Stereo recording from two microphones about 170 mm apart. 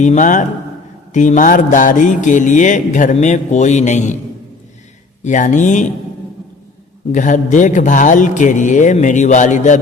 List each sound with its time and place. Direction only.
0.0 s mantra: 45° left (ahead or behind)
5.2 s mantra: 45° left (ahead or behind)
7.1 s mantra: 50° left (ahead or behind)